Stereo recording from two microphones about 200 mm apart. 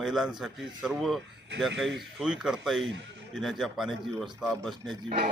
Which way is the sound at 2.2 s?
5° right (ahead or behind).